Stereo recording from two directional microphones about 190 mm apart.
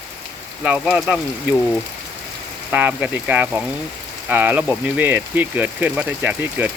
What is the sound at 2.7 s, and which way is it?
Frying, 10° right (ahead or behind).